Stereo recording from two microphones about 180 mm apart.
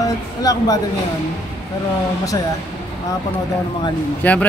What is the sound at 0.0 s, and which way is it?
Speech, 20° left (ahead or behind).